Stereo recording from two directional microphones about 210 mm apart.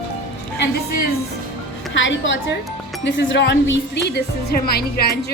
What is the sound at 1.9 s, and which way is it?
A woman's voice, 60° left (ahead or behind).